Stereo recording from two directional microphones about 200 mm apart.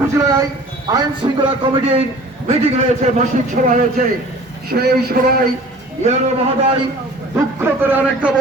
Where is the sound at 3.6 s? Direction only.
40° right (ahead or behind).